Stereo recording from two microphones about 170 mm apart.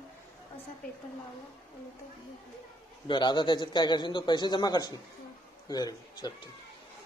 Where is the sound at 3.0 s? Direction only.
25° left (ahead or behind).